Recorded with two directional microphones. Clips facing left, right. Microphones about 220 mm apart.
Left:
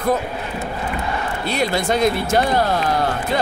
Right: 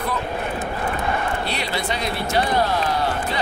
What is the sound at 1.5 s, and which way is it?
Speech, 45° left (ahead or behind).